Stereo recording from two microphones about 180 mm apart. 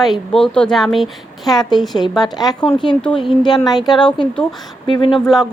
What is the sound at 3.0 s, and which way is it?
A woman's voice, 5° left (ahead or behind).